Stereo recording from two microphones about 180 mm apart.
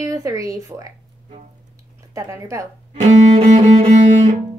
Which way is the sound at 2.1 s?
15° right (ahead or behind).